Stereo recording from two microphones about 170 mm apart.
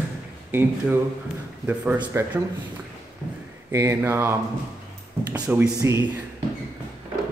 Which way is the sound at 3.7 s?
15° right (ahead or behind).